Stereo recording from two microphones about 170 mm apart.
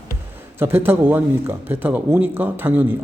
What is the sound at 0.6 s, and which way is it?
Speech, 10° right (ahead or behind).